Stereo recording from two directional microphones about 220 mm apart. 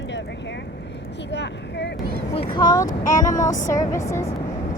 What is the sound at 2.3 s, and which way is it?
Speech, 25° left (ahead or behind).